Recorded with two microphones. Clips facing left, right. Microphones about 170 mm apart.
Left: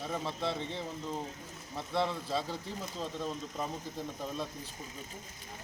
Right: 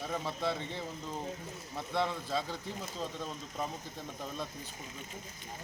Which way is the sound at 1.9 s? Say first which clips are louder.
Left 1 dB; centre (ahead or behind).